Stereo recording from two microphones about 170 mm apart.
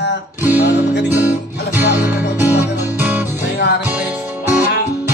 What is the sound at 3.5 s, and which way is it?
Music, 80° left.